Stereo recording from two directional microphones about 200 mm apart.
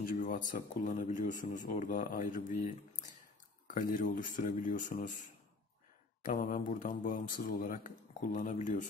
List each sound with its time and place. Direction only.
0.0 s speech: 45° left (ahead or behind)